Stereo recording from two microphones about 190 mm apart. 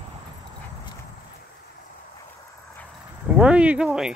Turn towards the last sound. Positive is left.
turn(degrees=-5)  # may be behind; listen again after turning